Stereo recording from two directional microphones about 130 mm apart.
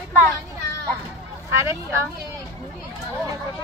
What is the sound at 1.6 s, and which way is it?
Speech, 20° right (ahead or behind).